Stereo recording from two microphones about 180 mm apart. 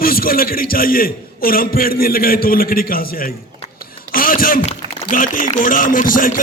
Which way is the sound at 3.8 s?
50° left (ahead or behind).